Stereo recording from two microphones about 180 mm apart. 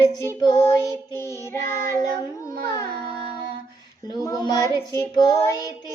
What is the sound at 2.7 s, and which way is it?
Music, 25° left (ahead or behind).